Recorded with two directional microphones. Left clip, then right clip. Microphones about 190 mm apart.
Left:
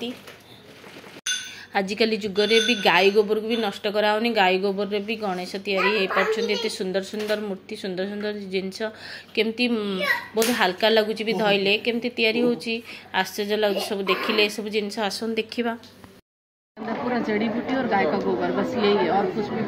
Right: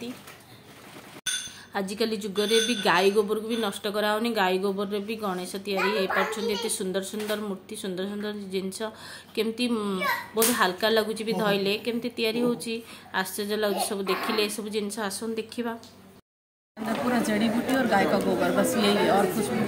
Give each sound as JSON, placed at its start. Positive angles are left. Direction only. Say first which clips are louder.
{"t": 1.7, "sound": "a woman's voice", "louder": "left 6 dB", "side_deg": 10}
{"t": 17.1, "sound": "a woman's voice", "louder": "left 2 dB", "side_deg": -50}